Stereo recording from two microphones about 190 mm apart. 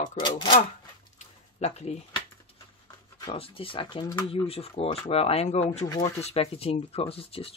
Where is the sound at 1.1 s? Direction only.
35° left (ahead or behind).